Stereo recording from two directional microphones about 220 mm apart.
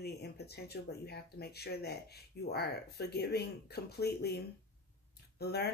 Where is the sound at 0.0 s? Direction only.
45° left (ahead or behind).